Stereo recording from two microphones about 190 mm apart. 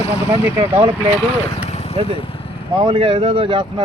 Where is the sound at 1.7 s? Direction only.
35° left (ahead or behind).